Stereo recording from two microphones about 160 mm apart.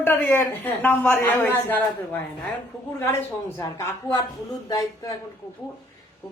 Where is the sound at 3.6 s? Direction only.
20° left (ahead or behind).